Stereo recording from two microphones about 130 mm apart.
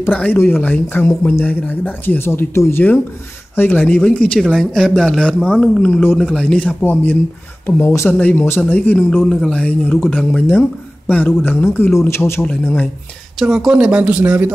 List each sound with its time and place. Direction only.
0.0 s speech: 15° left (ahead or behind)
13.4 s speech: 5° right (ahead or behind)